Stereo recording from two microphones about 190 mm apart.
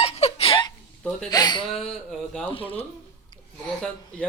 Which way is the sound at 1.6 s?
Centre (ahead or behind).